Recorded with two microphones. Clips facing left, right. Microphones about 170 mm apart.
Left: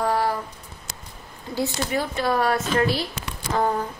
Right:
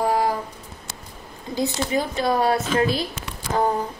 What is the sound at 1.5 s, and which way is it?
A woman's voice, 15° right (ahead or behind).